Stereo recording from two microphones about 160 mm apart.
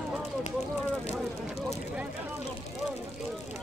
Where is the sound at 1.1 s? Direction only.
40° left (ahead or behind).